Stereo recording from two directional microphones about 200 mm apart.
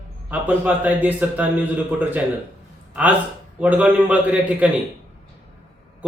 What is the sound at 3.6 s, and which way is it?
A man's voice, 5° right (ahead or behind).